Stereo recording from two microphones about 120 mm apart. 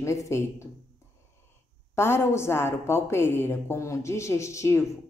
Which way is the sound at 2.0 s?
20° left (ahead or behind).